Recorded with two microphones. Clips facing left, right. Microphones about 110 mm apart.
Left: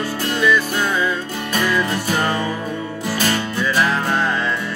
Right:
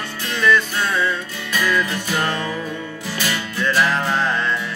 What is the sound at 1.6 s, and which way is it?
Music, 20° left (ahead or behind).